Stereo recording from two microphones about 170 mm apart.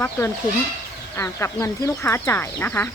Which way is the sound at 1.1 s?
15° left (ahead or behind).